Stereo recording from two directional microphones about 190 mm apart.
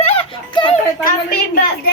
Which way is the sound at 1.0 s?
50° left (ahead or behind).